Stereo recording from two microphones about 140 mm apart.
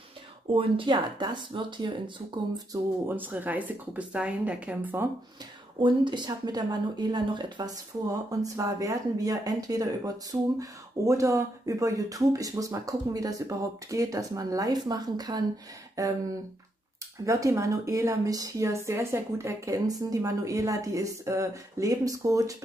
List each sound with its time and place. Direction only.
0.5 s speech: 40° right (ahead or behind)
3.1 s a woman's voice: 10° right (ahead or behind)
5.8 s speech: 35° right (ahead or behind)
17.2 s speech: 20° right (ahead or behind)